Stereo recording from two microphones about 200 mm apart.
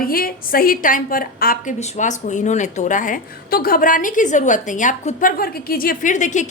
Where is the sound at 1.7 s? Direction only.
35° left (ahead or behind).